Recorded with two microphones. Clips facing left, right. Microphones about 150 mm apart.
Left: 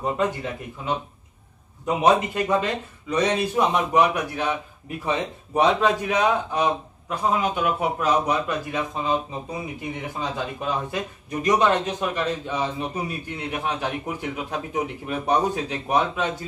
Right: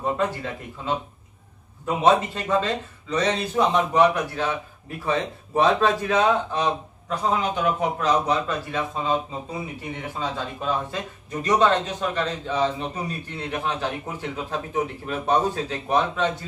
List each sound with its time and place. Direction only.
0.2 s speech: 15° left (ahead or behind)
10.1 s speech: 15° left (ahead or behind)